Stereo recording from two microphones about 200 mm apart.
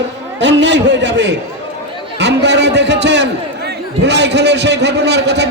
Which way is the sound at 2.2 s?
60° right (ahead or behind).